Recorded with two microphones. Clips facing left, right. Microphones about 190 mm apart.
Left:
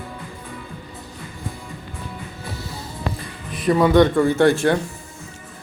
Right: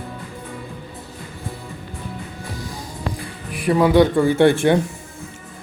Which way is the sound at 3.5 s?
10° right (ahead or behind).